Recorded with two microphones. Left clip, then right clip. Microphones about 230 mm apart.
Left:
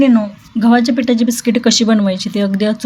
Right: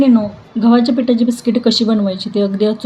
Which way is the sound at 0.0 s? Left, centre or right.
Left.